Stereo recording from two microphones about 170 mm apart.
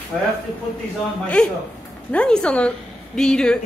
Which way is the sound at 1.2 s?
5° left (ahead or behind).